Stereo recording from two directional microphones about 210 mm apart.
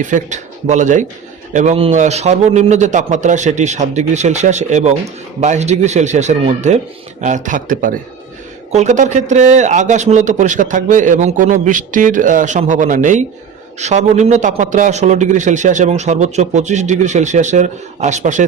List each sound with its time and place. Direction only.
0.0 s a man's voice: 35° right (ahead or behind)